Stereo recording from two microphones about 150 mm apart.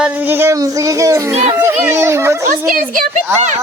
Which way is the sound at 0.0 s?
15° right (ahead or behind).